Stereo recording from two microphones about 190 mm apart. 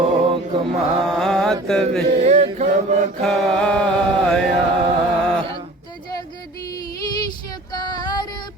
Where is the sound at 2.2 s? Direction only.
35° right (ahead or behind).